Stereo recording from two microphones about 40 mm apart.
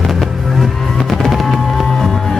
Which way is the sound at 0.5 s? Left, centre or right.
Centre.